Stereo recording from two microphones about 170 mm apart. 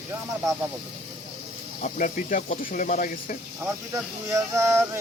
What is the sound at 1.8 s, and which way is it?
Speech, 50° left (ahead or behind).